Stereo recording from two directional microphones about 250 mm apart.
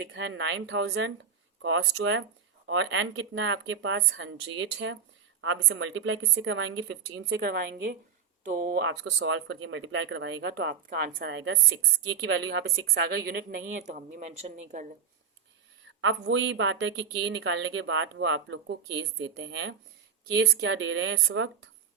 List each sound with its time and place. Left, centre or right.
0.1 s a woman's voice: right
16.0 s speech: right